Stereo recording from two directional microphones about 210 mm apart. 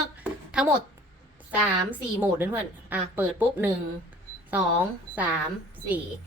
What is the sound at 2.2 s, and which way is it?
Speech, 10° right (ahead or behind).